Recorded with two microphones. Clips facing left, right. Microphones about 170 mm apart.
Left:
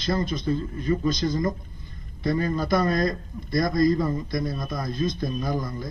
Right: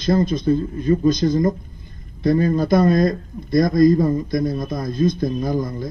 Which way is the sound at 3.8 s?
20° right (ahead or behind).